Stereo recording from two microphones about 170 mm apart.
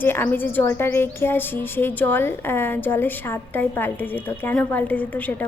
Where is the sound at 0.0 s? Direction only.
10° left (ahead or behind).